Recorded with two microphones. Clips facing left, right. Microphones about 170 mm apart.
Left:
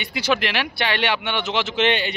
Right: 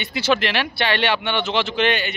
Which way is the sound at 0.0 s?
10° left (ahead or behind).